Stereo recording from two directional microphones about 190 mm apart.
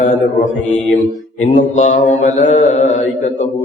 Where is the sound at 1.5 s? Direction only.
40° left (ahead or behind).